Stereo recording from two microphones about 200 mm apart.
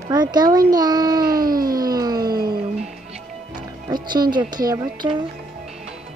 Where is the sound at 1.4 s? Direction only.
45° right (ahead or behind).